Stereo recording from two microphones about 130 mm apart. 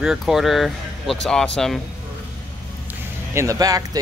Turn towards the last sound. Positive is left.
turn(degrees=-25)  # may be behind; listen again after turning